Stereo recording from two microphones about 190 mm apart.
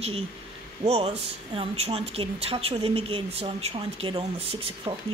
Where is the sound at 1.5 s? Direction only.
30° right (ahead or behind).